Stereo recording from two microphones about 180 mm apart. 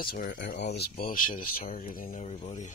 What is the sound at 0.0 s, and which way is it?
Speech, 55° left (ahead or behind).